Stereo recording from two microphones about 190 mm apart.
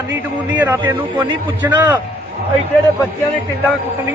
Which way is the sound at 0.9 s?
20° right (ahead or behind).